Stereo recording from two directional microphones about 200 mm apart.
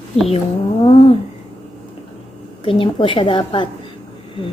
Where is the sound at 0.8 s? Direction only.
30° left (ahead or behind).